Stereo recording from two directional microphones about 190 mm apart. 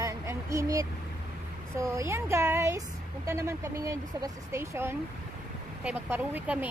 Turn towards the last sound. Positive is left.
turn(degrees=-10)  # may be behind; listen again after turning